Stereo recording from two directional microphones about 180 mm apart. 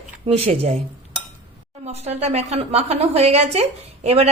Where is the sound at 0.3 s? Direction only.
35° right (ahead or behind).